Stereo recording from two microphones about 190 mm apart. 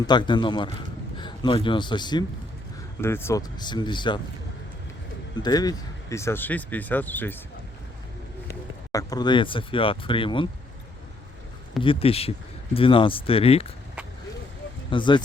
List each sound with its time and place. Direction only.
0.0 s a man's voice: 25° left (ahead or behind)
3.0 s speech: 15° left (ahead or behind)
5.4 s speech: 20° left (ahead or behind)
8.4 s speech: 20° left (ahead or behind)
11.8 s speech: 30° left (ahead or behind)
14.8 s speech: 25° left (ahead or behind)